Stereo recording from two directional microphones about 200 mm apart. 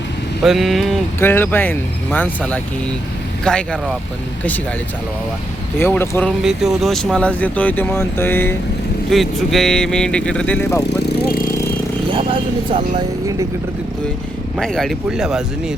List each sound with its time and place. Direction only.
0.4 s speech: centre (ahead or behind)
5.8 s speech: 10° left (ahead or behind)
6.4 s speech: 5° right (ahead or behind)
12.1 s vehicle: 25° right (ahead or behind)
14.6 s speech: centre (ahead or behind)